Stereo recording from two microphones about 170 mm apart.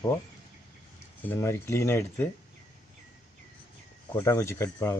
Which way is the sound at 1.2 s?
15° left (ahead or behind).